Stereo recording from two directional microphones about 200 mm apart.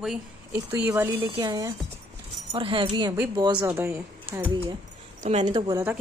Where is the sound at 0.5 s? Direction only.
10° right (ahead or behind).